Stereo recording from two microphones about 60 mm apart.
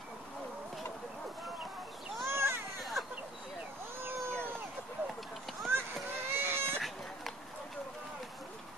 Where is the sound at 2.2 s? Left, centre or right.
Right.